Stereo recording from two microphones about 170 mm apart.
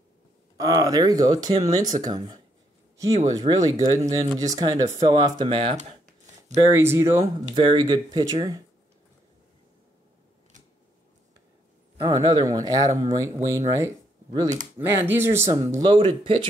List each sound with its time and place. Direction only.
0.6 s speech: 20° right (ahead or behind)
6.5 s speech: 15° right (ahead or behind)
7.5 s speech: 30° right (ahead or behind)
12.0 s speech: 25° right (ahead or behind)